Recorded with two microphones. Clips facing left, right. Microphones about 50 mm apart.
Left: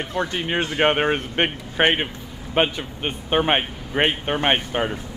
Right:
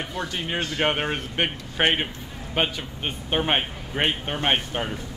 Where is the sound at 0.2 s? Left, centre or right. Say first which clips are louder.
Left 5 dB; left.